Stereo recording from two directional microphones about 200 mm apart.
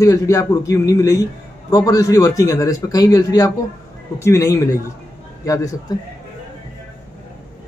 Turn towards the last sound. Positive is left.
turn(degrees=15)  # may be behind; listen again after turning